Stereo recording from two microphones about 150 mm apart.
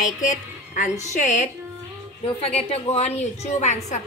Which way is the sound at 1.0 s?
50° left (ahead or behind).